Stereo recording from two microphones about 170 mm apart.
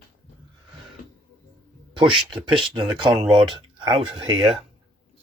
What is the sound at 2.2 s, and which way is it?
Speech, 30° right (ahead or behind).